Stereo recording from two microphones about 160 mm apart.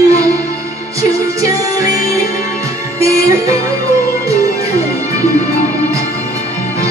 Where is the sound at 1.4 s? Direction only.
20° right (ahead or behind).